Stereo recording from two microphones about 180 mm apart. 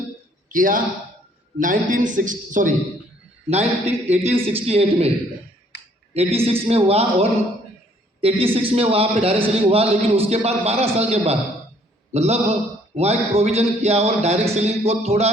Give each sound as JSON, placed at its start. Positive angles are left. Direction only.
{"t": 0.4, "sound": "a man's voice", "side_deg": -50}
{"t": 5.7, "sound": "a sound", "side_deg": 70}
{"t": 6.1, "sound": "a man's voice", "side_deg": -35}